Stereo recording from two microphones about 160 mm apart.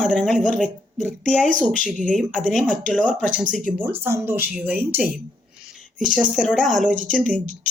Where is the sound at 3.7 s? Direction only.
15° right (ahead or behind).